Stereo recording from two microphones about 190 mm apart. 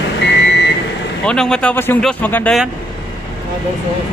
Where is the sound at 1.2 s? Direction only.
5° left (ahead or behind).